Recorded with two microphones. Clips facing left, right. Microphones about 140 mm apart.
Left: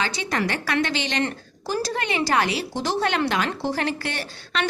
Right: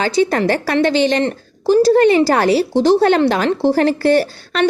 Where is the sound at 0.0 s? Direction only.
40° right (ahead or behind).